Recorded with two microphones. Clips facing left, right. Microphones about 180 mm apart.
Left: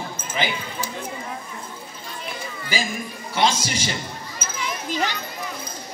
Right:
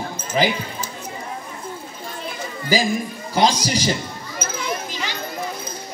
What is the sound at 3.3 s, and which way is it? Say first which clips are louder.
Speech: right 3 dB; 35° right (ahead or behind).